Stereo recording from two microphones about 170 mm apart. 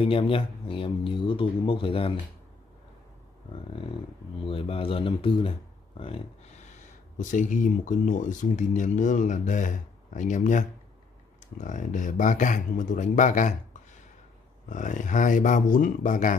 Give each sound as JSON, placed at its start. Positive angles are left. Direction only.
{"t": 0.0, "sound": "speech", "side_deg": 35}
{"t": 4.5, "sound": "speech", "side_deg": 30}
{"t": 7.2, "sound": "speech", "side_deg": 50}
{"t": 11.6, "sound": "speech", "side_deg": 50}
{"t": 14.7, "sound": "speech", "side_deg": 50}